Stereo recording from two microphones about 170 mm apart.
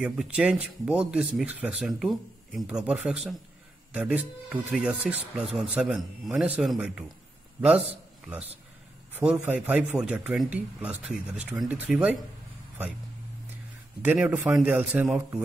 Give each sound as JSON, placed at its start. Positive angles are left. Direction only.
{"t": 0.0, "sound": "speech", "side_deg": -5}
{"t": 9.1, "sound": "speech", "side_deg": -10}
{"t": 14.0, "sound": "speech", "side_deg": -10}